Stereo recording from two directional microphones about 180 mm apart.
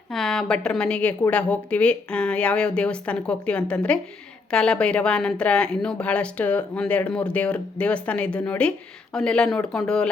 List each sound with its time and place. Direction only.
0.1 s a woman's voice: centre (ahead or behind)